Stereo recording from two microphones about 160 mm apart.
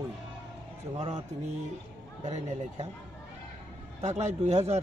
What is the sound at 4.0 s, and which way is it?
Speech, 45° right (ahead or behind).